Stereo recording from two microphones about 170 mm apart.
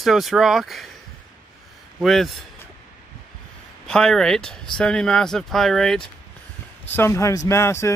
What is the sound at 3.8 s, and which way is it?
Speech, 5° left (ahead or behind).